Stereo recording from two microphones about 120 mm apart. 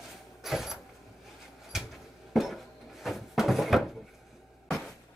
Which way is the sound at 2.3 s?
Centre (ahead or behind).